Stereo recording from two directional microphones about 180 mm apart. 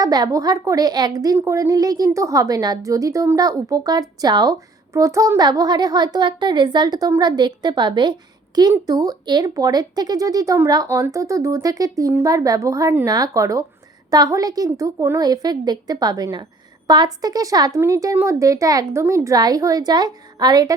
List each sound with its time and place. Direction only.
0.0 s a woman's voice: 20° right (ahead or behind)